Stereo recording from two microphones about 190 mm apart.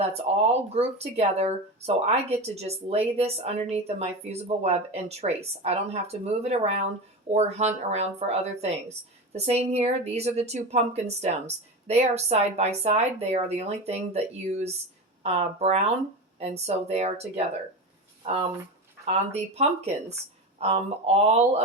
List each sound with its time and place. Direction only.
0.1 s speech: 35° right (ahead or behind)
18.2 s a sound: 35° right (ahead or behind)
19.0 s speech: 35° right (ahead or behind)